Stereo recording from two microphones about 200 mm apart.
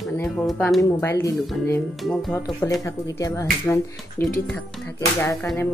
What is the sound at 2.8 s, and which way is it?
Speech, 15° left (ahead or behind).